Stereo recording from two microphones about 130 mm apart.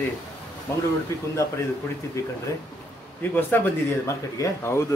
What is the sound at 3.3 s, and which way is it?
Speech, 15° left (ahead or behind).